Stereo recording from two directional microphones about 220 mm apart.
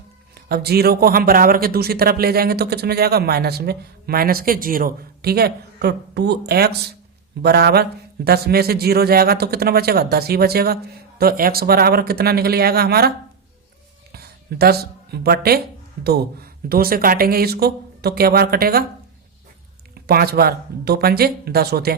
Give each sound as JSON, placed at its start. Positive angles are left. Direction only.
{"t": 0.3, "sound": "speech", "side_deg": -45}
{"t": 19.9, "sound": "speech", "side_deg": -45}